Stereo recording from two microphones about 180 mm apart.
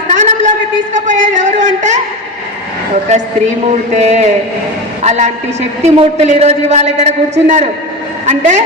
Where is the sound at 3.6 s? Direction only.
35° right (ahead or behind).